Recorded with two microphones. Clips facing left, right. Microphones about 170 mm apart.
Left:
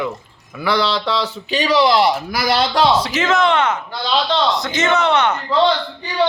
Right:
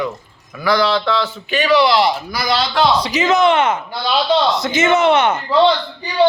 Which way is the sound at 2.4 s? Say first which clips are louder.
Left 1 dB; 60° left (ahead or behind).